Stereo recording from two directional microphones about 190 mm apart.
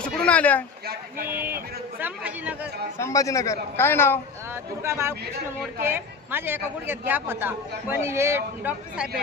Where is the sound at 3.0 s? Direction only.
15° left (ahead or behind).